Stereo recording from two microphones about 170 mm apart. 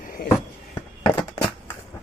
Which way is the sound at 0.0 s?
55° left (ahead or behind).